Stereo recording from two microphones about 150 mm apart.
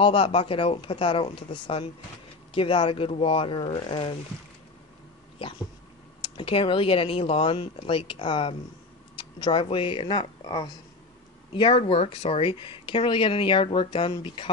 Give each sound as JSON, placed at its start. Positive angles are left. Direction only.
{"t": 0.0, "sound": "speech", "side_deg": 35}
{"t": 6.2, "sound": "speech", "side_deg": 35}